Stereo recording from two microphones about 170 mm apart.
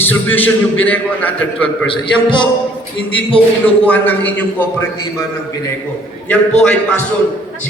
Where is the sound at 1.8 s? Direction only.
30° left (ahead or behind).